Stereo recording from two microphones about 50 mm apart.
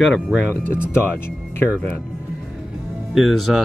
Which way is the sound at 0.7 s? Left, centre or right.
Left.